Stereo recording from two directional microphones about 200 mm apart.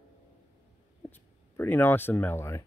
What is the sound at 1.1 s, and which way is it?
Speech, 10° left (ahead or behind).